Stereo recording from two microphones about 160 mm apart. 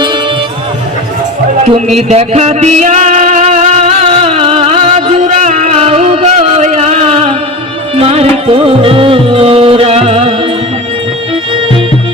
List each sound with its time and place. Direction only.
2.0 s music: 40° right (ahead or behind)